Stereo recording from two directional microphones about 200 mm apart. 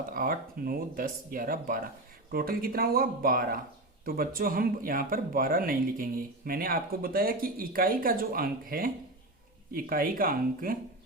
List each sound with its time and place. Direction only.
0.1 s speech: 45° right (ahead or behind)